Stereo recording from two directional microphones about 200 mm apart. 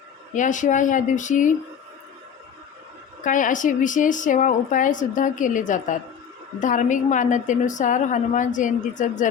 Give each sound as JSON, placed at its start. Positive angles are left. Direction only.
{"t": 0.3, "sound": "a woman's voice", "side_deg": 40}
{"t": 3.2, "sound": "a woman's voice", "side_deg": 40}